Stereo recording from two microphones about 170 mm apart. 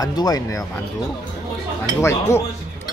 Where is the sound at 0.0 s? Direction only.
20° left (ahead or behind).